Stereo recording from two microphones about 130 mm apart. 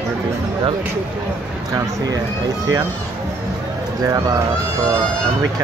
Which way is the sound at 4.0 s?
25° right (ahead or behind).